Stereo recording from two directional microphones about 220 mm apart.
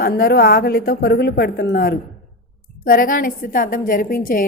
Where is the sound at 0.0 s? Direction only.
45° left (ahead or behind).